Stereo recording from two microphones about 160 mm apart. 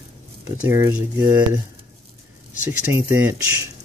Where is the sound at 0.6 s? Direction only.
15° right (ahead or behind).